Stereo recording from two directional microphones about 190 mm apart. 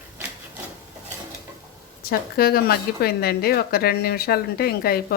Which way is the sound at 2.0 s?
55° left (ahead or behind).